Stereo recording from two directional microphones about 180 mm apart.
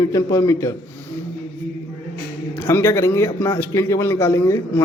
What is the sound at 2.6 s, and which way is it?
Speech, 15° left (ahead or behind).